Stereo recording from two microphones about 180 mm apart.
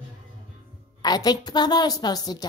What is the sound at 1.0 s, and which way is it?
Speech, 20° left (ahead or behind).